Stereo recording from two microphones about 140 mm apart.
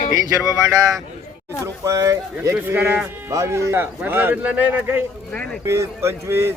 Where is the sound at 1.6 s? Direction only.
25° right (ahead or behind).